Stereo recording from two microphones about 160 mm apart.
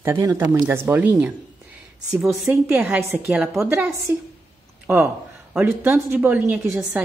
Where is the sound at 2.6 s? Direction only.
15° right (ahead or behind).